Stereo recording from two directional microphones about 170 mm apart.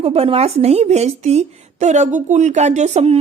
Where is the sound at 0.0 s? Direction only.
35° right (ahead or behind).